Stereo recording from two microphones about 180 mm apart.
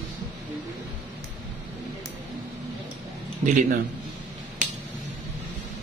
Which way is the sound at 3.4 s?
45° right (ahead or behind).